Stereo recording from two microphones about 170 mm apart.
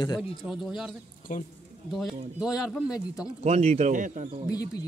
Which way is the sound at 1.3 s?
50° left (ahead or behind).